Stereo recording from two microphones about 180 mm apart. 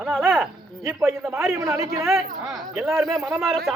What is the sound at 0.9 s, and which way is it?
Speech, 15° right (ahead or behind).